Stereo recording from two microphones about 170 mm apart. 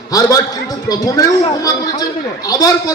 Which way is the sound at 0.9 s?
20° left (ahead or behind).